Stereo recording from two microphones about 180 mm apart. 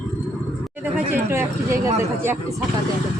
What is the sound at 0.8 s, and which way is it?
Speech, 10° right (ahead or behind).